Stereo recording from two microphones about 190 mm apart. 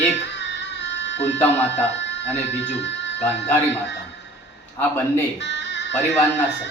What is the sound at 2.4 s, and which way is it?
Speech, 65° left (ahead or behind).